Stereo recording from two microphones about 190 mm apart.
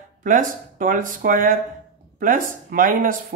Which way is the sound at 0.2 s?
45° right (ahead or behind).